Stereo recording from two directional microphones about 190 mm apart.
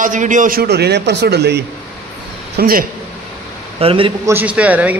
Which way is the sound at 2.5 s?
50° right (ahead or behind).